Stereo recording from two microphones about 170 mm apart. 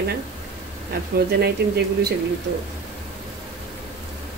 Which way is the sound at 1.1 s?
70° right (ahead or behind).